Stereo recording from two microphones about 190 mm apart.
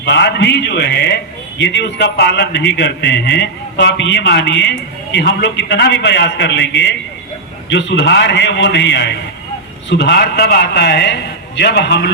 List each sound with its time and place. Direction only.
0.0 s a man's voice: 65° left (ahead or behind)